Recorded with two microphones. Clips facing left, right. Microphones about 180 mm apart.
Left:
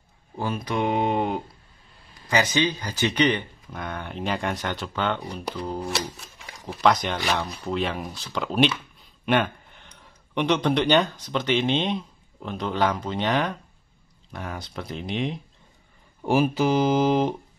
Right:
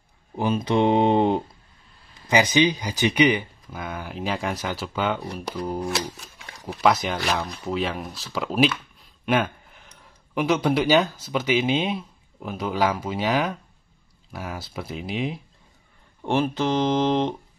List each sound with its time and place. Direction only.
0.4 s speech: 20° right (ahead or behind)
2.2 s speech: 15° right (ahead or behind)
16.2 s speech: 5° left (ahead or behind)